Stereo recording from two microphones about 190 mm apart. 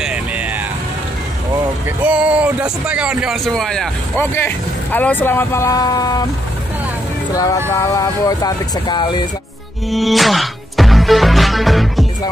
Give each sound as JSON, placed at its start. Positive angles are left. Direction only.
{"t": 0.0, "sound": "vehicle", "side_deg": -5}
{"t": 2.1, "sound": "speech", "side_deg": -5}
{"t": 7.7, "sound": "speech", "side_deg": 15}
{"t": 9.8, "sound": "music", "side_deg": 0}